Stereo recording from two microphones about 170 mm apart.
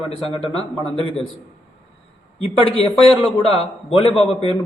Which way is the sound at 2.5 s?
30° left (ahead or behind).